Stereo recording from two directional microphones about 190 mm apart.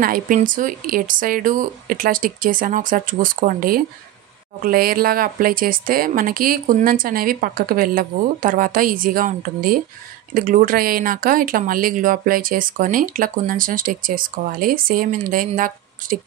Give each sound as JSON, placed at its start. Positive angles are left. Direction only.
{"t": 0.0, "sound": "speech", "side_deg": -45}